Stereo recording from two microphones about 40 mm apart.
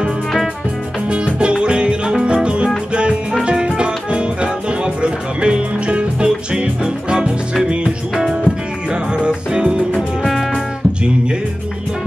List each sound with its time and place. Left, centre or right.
1.1 s music: right
9.9 s music: centre